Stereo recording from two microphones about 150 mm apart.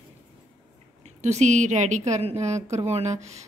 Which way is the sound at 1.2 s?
50° right (ahead or behind).